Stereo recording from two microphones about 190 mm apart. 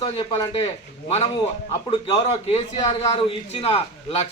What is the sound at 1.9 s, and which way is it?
A man's voice, 30° left (ahead or behind).